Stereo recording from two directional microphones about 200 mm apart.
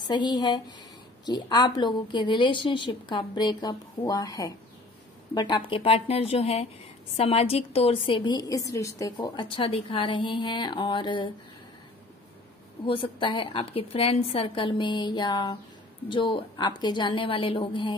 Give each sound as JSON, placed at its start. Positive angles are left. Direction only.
{"t": 0.1, "sound": "a woman's voice", "side_deg": 20}
{"t": 12.8, "sound": "a woman's voice", "side_deg": 25}